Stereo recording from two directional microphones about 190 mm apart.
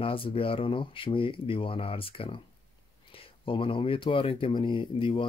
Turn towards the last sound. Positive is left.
turn(degrees=25)  # may be behind; listen again after turning